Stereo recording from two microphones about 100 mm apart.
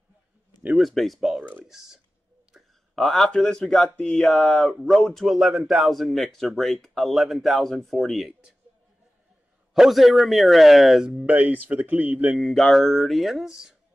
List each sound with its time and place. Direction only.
0.7 s speech: centre (ahead or behind)
9.8 s speech: centre (ahead or behind)
12.4 s speech: centre (ahead or behind)